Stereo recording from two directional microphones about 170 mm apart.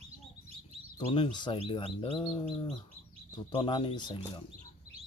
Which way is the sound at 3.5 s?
30° left (ahead or behind).